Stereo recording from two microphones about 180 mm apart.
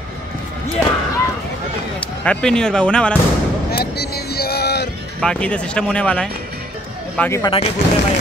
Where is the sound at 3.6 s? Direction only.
60° left (ahead or behind).